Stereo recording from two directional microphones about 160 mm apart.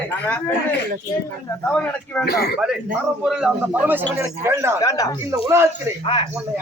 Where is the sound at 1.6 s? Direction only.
10° left (ahead or behind).